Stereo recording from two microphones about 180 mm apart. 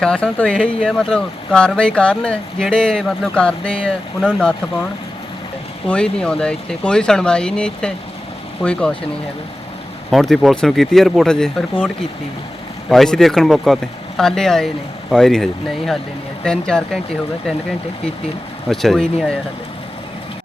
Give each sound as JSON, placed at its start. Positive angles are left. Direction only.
{"t": 0.0, "sound": "speech", "side_deg": 5}
{"t": 5.9, "sound": "speech", "side_deg": 5}
{"t": 10.1, "sound": "speech", "side_deg": 0}
{"t": 12.9, "sound": "speech", "side_deg": 0}
{"t": 18.7, "sound": "speech", "side_deg": 0}